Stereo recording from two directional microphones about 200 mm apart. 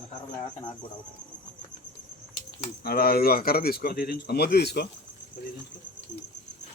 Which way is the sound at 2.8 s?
50° left (ahead or behind).